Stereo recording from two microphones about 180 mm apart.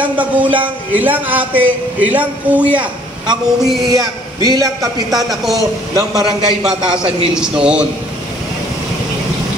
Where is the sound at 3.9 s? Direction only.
20° right (ahead or behind).